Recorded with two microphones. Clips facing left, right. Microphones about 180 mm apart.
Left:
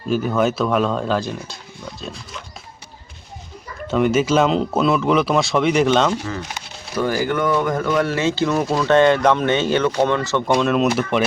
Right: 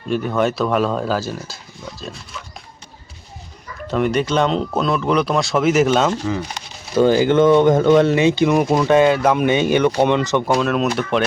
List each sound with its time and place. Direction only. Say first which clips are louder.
0.1 s speech: even; centre (ahead or behind)
3.8 s speech: left 1 dB; centre (ahead or behind)
6.9 s speech: right 7 dB; 25° right (ahead or behind)
8.9 s speech: left 2 dB; 5° right (ahead or behind)
10.4 s speech: left 1 dB; 5° right (ahead or behind)